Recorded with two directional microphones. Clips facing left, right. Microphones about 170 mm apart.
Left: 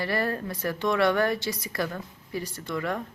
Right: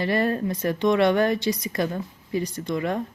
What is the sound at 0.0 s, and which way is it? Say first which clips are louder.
Speech: right 5 dB; 20° right (ahead or behind).